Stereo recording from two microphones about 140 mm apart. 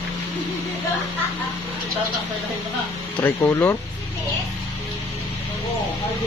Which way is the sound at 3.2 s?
20° left (ahead or behind).